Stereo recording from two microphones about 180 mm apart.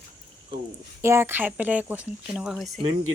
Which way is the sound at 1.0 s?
15° right (ahead or behind).